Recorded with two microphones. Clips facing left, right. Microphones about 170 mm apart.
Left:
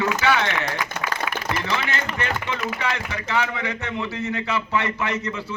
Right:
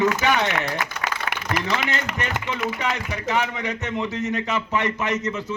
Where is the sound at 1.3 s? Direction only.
85° right.